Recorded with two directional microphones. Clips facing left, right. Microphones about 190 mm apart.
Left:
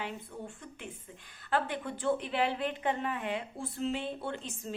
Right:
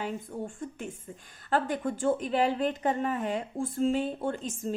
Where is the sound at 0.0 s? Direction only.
45° right (ahead or behind).